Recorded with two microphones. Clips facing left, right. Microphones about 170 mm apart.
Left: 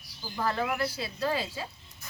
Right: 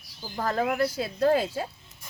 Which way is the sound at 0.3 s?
45° right (ahead or behind).